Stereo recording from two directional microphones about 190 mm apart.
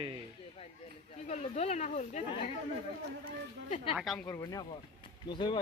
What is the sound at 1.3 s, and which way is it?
Speech, 35° left (ahead or behind).